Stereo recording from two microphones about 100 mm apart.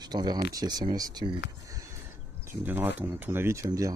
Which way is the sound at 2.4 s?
20° right (ahead or behind).